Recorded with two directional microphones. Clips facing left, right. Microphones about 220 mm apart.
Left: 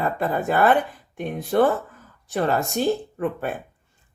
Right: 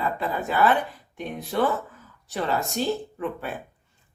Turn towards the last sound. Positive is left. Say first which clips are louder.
# left 5 dB
turn(degrees=50)  # may be behind; listen again after turning